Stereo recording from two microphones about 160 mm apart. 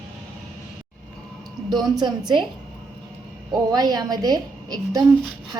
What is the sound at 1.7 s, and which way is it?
Speech, 25° right (ahead or behind).